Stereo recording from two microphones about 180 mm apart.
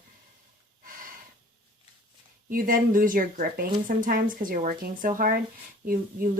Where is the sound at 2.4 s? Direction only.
50° right (ahead or behind).